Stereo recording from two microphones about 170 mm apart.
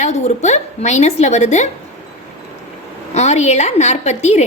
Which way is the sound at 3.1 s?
40° left (ahead or behind).